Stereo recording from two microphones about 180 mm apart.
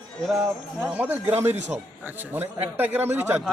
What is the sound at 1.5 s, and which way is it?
Speech, 40° right (ahead or behind).